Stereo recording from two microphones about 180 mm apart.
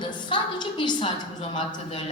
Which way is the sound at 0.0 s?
25° left (ahead or behind).